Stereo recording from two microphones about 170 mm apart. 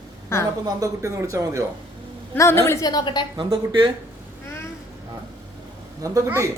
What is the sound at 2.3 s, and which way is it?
Speech, 15° left (ahead or behind).